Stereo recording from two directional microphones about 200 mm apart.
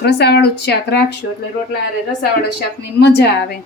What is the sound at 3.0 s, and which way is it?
Speech, 60° left (ahead or behind).